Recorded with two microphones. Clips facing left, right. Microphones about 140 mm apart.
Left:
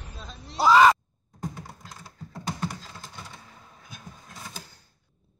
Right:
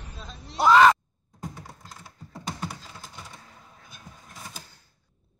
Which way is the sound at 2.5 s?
10° right (ahead or behind).